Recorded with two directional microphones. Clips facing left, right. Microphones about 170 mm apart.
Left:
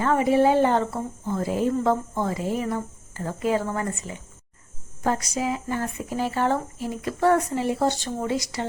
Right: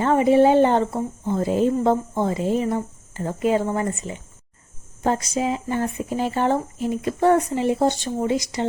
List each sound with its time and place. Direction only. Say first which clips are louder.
0.0 s speech: right 4 dB; 25° right (ahead or behind)